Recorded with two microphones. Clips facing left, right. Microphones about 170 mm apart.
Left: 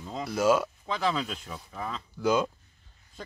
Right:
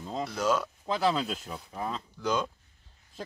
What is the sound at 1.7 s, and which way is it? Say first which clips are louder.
Speech: right 2 dB; 20° right (ahead or behind).